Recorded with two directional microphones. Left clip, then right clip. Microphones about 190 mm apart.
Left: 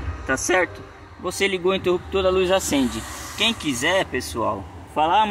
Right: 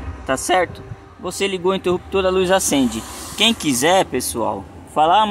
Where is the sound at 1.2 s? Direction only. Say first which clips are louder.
Right 1 dB; 15° right (ahead or behind).